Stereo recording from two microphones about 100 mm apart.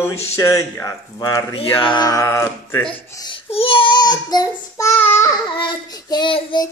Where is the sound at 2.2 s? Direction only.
30° left (ahead or behind).